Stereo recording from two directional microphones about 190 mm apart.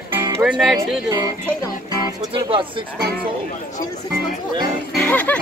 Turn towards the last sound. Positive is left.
turn(degrees=10)  # may be behind; listen again after turning